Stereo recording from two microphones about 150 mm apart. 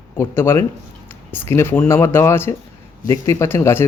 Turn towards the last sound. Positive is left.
turn(degrees=15)  # may be behind; listen again after turning